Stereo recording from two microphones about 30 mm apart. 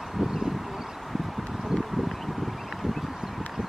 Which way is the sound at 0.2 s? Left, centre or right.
Centre.